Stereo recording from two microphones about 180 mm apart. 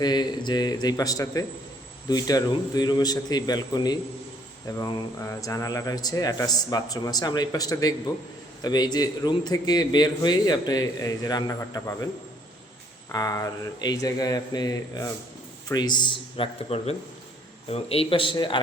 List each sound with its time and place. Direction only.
0.0 s a man's voice: 25° left (ahead or behind)
13.1 s a man's voice: 20° left (ahead or behind)